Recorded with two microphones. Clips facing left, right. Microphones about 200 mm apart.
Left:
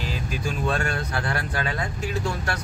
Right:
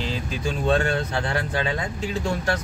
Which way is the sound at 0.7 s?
25° right (ahead or behind).